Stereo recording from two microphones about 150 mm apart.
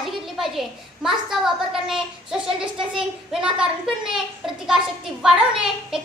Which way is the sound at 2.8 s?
5° right (ahead or behind).